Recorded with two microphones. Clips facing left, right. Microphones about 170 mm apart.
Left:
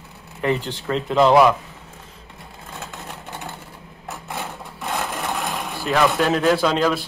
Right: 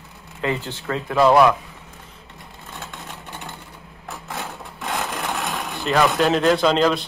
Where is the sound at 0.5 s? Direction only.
15° left (ahead or behind).